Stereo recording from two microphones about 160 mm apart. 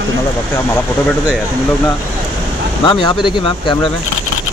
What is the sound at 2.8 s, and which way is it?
Speech, 30° left (ahead or behind).